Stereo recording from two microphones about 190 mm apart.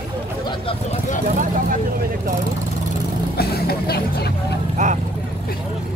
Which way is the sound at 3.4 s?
55° left (ahead or behind).